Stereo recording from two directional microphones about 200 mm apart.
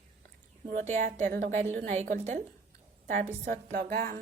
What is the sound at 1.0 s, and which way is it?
Speech, 45° right (ahead or behind).